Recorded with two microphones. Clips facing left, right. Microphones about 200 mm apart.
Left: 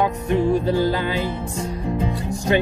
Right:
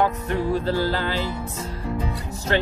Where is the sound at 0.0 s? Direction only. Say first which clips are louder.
Left 3 dB; 15° left (ahead or behind).